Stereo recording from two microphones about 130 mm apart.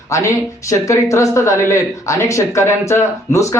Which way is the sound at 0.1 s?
25° left (ahead or behind).